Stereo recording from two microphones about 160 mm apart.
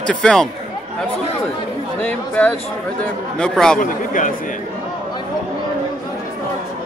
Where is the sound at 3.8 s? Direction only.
55° left (ahead or behind).